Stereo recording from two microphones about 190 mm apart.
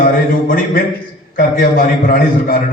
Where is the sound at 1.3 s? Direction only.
45° left (ahead or behind).